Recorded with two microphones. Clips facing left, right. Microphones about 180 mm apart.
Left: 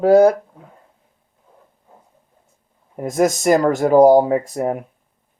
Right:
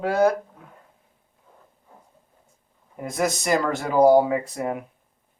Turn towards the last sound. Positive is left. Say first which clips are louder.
# left 6 dB
turn(degrees=40)  # may be behind; listen again after turning